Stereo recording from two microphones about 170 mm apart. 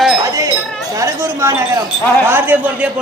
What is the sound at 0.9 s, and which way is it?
Chatter, 15° right (ahead or behind).